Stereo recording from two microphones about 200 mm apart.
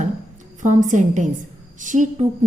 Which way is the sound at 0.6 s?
40° right (ahead or behind).